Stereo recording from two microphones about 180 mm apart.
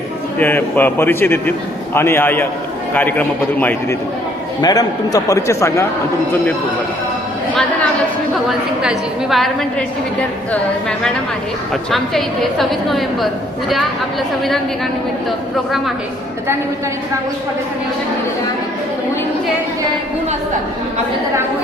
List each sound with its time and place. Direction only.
0.3 s a man's voice: 10° left (ahead or behind)
8.4 s a woman's voice: centre (ahead or behind)